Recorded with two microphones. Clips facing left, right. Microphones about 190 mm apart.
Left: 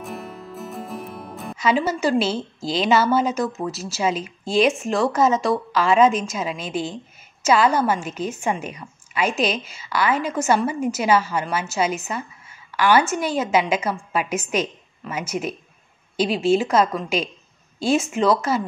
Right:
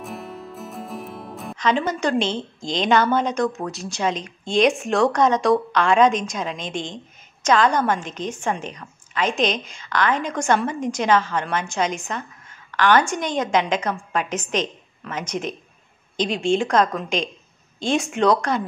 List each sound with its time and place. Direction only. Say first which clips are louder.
0.0 s a woman's voice: even; centre (ahead or behind)